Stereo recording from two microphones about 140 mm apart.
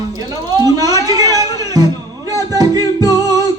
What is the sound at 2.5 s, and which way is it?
Music, 25° right (ahead or behind).